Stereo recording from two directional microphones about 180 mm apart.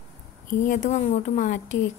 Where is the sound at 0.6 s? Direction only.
45° left (ahead or behind).